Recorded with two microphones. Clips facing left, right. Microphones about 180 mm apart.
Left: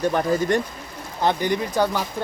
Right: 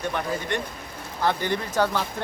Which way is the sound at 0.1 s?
40° left (ahead or behind).